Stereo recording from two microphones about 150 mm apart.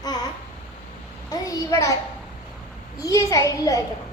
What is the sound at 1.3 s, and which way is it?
Speech, 25° left (ahead or behind).